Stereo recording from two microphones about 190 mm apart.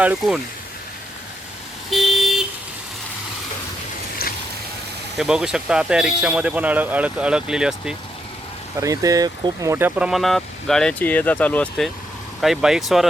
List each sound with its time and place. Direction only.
0.0 s speech: 5° right (ahead or behind)
1.9 s vehicle: centre (ahead or behind)
4.2 s a sound: 55° left (ahead or behind)
5.1 s speech: 5° right (ahead or behind)
8.8 s speech: 20° right (ahead or behind); by 13.1 s centre (ahead or behind)